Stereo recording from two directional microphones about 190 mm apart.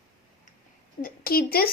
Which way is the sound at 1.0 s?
50° left (ahead or behind).